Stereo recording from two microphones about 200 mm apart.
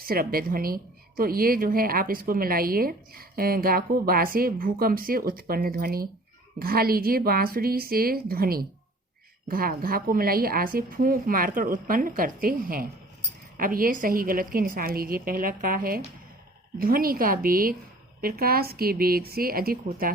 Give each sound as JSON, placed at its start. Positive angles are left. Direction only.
{"t": 0.0, "sound": "a woman's voice", "side_deg": -50}